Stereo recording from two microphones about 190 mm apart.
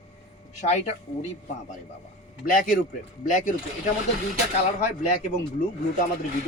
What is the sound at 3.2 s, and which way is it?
Speech, 40° left (ahead or behind).